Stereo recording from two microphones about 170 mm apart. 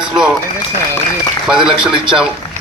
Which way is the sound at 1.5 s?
5° right (ahead or behind).